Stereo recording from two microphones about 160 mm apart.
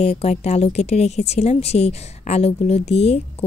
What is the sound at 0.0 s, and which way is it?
A woman's voice, 40° left (ahead or behind).